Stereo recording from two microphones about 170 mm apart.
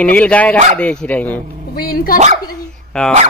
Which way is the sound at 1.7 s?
60° left (ahead or behind).